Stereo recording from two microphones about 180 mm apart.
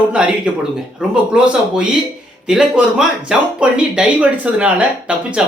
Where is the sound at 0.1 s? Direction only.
5° right (ahead or behind).